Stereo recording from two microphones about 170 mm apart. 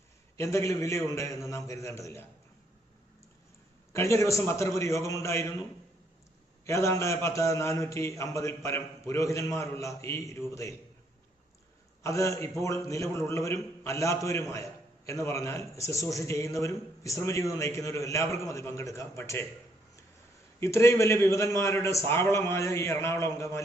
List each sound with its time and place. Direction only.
0.3 s a man's voice: 15° left (ahead or behind)
3.9 s a man's voice: 15° left (ahead or behind)
6.7 s a man's voice: 15° left (ahead or behind)
12.0 s a man's voice: 20° left (ahead or behind)
20.6 s a man's voice: 15° left (ahead or behind)